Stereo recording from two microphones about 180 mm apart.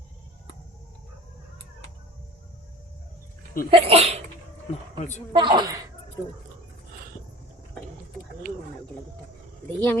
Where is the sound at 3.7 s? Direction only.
35° right (ahead or behind).